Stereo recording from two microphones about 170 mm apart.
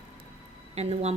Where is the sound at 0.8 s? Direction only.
40° right (ahead or behind).